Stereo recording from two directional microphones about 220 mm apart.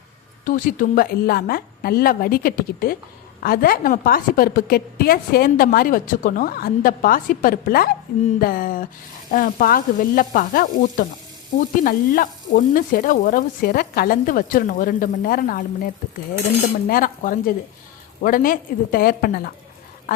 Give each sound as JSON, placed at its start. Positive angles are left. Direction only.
{"t": 0.4, "sound": "a woman's voice", "side_deg": 35}
{"t": 16.9, "sound": "a woman's voice", "side_deg": 40}